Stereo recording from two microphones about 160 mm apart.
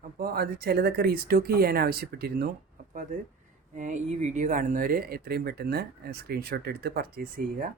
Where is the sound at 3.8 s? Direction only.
50° right (ahead or behind); by 7.4 s 70° right (ahead or behind).